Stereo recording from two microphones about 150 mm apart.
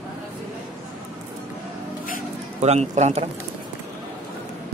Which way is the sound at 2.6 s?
50° right (ahead or behind).